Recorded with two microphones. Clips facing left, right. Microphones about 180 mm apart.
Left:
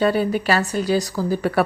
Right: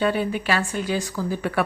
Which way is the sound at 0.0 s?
40° left (ahead or behind).